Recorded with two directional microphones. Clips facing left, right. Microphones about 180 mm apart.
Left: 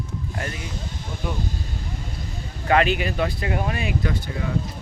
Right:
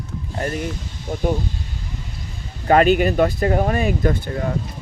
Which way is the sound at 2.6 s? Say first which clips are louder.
Right 6 dB; 45° right (ahead or behind).